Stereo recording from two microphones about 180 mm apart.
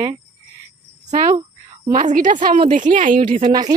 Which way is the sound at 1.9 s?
50° right (ahead or behind).